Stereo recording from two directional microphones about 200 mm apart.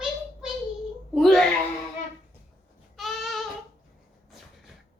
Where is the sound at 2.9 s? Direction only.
Centre (ahead or behind).